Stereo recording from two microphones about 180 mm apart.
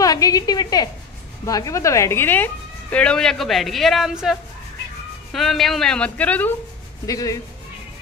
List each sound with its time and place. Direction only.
0.0 s a woman's voice: 20° left (ahead or behind)
7.1 s a man's voice: 20° left (ahead or behind)